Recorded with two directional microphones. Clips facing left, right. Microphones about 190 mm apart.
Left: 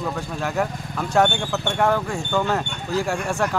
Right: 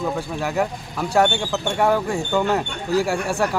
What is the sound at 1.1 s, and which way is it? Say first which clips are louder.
Speech: right 1 dB; 10° right (ahead or behind).